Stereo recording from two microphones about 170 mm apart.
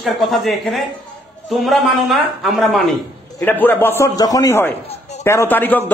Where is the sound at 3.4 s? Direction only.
10° left (ahead or behind).